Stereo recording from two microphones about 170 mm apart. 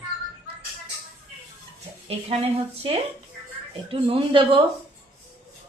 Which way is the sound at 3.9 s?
30° right (ahead or behind).